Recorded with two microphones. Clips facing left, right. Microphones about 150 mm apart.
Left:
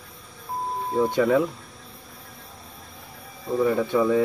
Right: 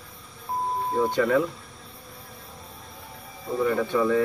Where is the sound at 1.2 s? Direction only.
15° left (ahead or behind).